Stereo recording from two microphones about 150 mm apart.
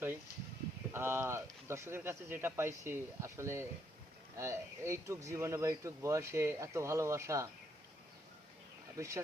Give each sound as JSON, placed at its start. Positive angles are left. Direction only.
{"t": 0.9, "sound": "speech", "side_deg": -15}
{"t": 9.0, "sound": "speech", "side_deg": -20}